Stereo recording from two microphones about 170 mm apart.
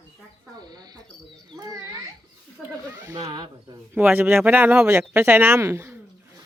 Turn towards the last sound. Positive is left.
turn(degrees=-15)  # may be behind; listen again after turning